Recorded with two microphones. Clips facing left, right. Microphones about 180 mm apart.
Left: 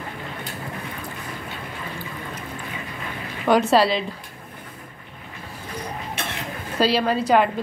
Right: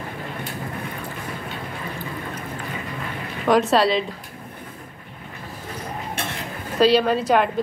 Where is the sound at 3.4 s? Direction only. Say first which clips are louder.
Even; centre (ahead or behind).